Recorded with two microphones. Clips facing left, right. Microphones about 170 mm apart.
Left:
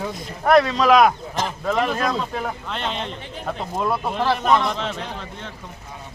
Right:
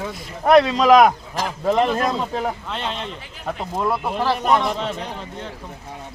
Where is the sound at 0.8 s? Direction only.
20° right (ahead or behind).